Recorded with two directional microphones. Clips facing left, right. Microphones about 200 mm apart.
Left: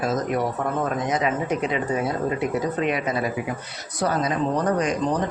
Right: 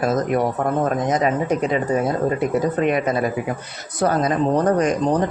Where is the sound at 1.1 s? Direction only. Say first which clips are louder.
Right 4 dB; 45° right (ahead or behind).